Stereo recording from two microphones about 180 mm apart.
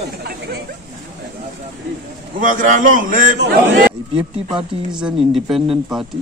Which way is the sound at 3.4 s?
70° right (ahead or behind).